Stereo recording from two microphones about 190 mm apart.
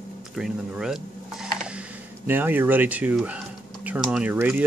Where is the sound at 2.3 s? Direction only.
10° right (ahead or behind).